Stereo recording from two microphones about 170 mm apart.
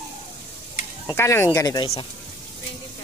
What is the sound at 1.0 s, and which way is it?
Speech, 15° left (ahead or behind).